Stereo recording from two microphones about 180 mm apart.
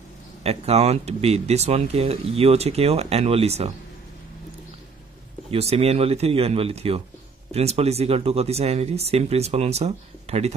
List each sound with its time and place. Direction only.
0.4 s speech: 35° right (ahead or behind)
5.5 s speech: 35° right (ahead or behind)